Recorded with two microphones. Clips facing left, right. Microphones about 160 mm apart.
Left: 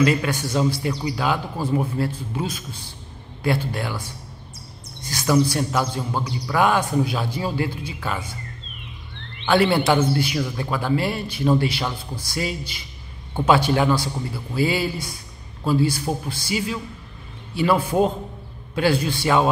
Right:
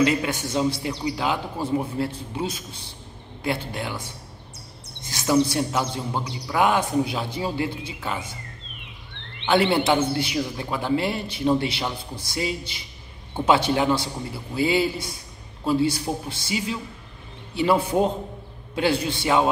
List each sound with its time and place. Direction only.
0.0 s a man's voice: 20° right (ahead or behind)
5.0 s a man's voice: 25° right (ahead or behind)
9.5 s a man's voice: 20° right (ahead or behind)